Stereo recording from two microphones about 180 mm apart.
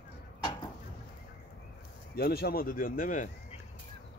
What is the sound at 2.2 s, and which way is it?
Speech, 60° left (ahead or behind).